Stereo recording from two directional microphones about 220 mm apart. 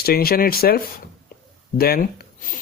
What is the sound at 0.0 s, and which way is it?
Speech, 45° left (ahead or behind).